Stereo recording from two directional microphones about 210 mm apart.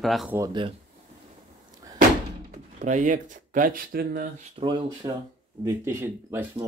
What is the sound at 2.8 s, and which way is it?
Speech, 35° right (ahead or behind).